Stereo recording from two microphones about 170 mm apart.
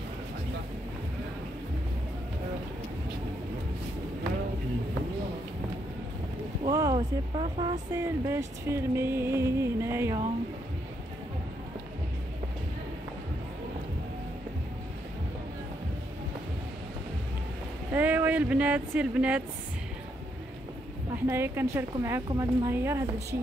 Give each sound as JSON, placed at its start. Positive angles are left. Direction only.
{"t": 6.7, "sound": "speech", "side_deg": -20}
{"t": 17.9, "sound": "speech", "side_deg": -10}
{"t": 21.3, "sound": "speech", "side_deg": -15}